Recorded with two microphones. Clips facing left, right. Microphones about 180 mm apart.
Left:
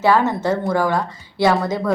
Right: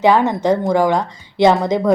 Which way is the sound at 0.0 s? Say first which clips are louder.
Right 3 dB; 15° right (ahead or behind).